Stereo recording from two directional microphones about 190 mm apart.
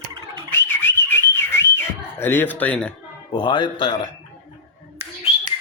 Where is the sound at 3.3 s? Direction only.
25° left (ahead or behind).